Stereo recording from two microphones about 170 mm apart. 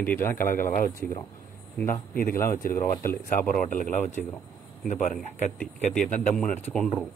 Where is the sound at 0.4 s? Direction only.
55° left (ahead or behind).